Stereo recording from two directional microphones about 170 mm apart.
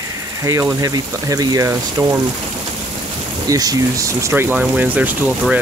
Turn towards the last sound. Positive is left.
turn(degrees=-10)  # may be behind; listen again after turning